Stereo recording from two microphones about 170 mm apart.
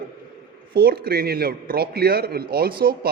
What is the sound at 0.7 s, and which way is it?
Speech, 65° right (ahead or behind).